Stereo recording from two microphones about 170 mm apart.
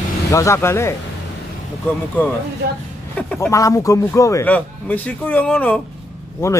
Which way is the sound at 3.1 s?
10° left (ahead or behind).